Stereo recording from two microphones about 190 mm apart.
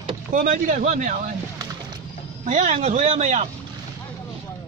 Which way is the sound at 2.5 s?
35° right (ahead or behind).